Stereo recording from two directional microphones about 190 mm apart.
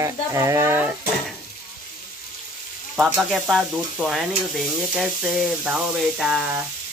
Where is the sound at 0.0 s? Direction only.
15° right (ahead or behind).